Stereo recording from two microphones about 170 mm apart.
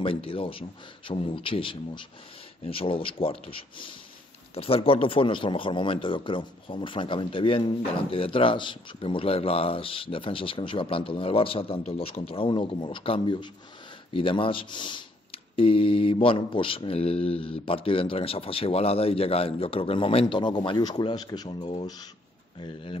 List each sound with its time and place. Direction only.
0.0 s speech: 30° left (ahead or behind)